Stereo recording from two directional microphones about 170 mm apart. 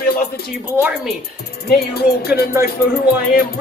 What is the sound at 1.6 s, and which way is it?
Speech, 65° left (ahead or behind).